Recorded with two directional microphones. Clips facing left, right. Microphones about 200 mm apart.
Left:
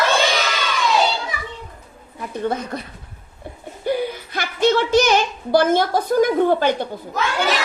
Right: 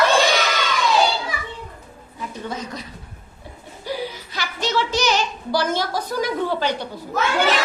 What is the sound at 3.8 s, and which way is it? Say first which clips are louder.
A woman's voice: left 6 dB; 55° left (ahead or behind).